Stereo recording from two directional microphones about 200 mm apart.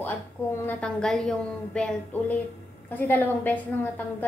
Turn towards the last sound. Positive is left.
turn(degrees=10)  # may be behind; listen again after turning